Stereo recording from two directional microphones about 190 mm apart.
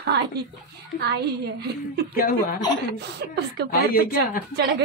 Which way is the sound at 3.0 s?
60° right (ahead or behind).